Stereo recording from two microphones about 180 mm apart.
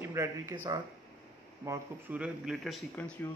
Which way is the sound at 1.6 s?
15° right (ahead or behind).